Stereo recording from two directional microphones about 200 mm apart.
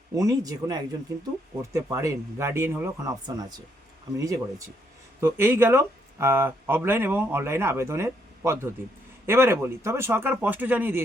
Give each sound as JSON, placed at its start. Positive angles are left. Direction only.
{"t": 0.2, "sound": "speech", "side_deg": -15}